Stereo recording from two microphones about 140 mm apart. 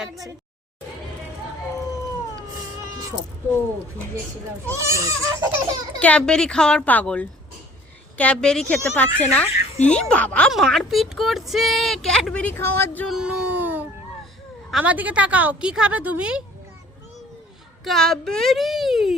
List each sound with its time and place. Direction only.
4.7 s goat: 20° right (ahead or behind)
6.0 s speech: 10° left (ahead or behind)
13.1 s a woman's voice: 5° right (ahead or behind)
17.8 s speech: 5° left (ahead or behind)